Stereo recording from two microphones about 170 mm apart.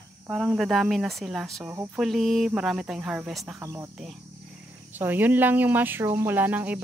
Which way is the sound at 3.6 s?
20° right (ahead or behind).